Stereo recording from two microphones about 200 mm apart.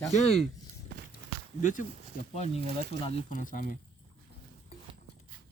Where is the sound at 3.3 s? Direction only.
40° left (ahead or behind).